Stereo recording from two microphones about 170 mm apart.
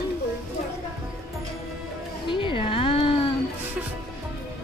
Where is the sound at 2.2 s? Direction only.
30° left (ahead or behind).